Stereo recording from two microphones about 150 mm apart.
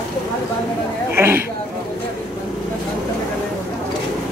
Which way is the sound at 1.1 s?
15° right (ahead or behind).